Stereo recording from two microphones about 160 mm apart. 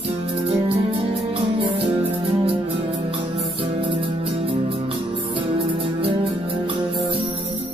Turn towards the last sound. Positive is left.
turn(degrees=-35)  # may be behind; listen again after turning